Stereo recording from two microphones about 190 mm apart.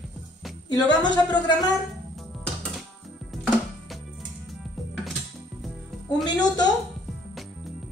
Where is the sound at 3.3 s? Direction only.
Centre (ahead or behind).